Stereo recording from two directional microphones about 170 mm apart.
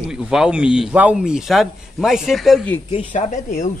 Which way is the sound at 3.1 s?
45° left (ahead or behind).